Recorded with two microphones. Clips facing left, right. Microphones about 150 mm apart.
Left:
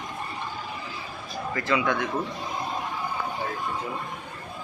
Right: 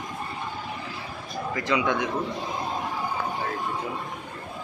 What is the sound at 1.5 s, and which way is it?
Speech, 15° right (ahead or behind).